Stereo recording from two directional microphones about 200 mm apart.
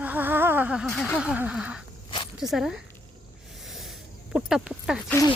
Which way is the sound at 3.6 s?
Centre (ahead or behind).